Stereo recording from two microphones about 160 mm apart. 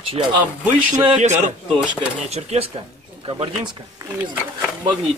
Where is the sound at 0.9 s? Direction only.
50° right (ahead or behind).